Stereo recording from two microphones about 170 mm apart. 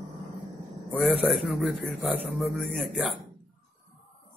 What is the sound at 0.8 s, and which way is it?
A man's voice, centre (ahead or behind).